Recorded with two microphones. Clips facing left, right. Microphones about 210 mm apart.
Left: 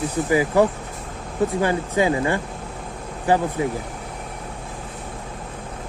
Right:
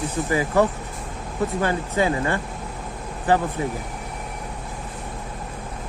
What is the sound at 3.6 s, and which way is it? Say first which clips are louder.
Speech: left 3 dB; 20° left (ahead or behind).